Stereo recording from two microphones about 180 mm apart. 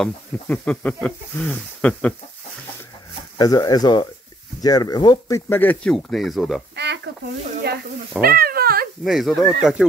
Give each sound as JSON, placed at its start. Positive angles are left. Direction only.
{"t": 0.0, "sound": "speech", "side_deg": 5}
{"t": 3.3, "sound": "speech", "side_deg": 20}
{"t": 5.5, "sound": "speech", "side_deg": 10}
{"t": 6.7, "sound": "a sound", "side_deg": -70}
{"t": 8.2, "sound": "cat", "side_deg": -55}
{"t": 9.0, "sound": "speech", "side_deg": 0}